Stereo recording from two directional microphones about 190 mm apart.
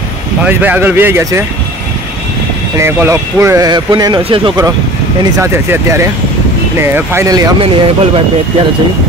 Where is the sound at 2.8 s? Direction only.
15° right (ahead or behind).